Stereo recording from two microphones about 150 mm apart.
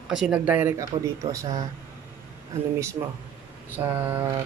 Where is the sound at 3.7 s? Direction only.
15° right (ahead or behind).